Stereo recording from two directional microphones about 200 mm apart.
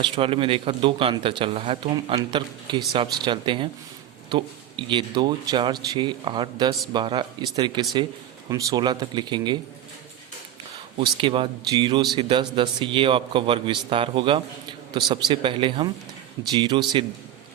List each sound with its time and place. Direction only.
0.0 s speech: 25° right (ahead or behind)
10.9 s speech: 25° right (ahead or behind)